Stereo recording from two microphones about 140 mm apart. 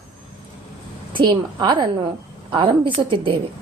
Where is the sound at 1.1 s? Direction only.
35° right (ahead or behind).